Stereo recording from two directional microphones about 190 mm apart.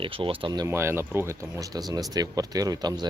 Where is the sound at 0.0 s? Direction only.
30° right (ahead or behind).